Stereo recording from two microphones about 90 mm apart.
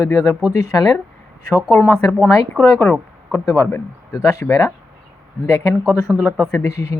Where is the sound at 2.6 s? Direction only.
30° left (ahead or behind).